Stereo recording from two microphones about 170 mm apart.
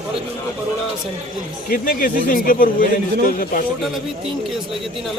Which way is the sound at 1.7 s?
55° left (ahead or behind).